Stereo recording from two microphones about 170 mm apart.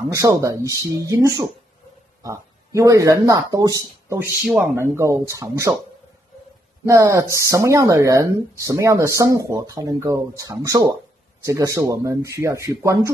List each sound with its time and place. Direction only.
0.1 s speech: 20° right (ahead or behind)
6.9 s speech: 20° right (ahead or behind)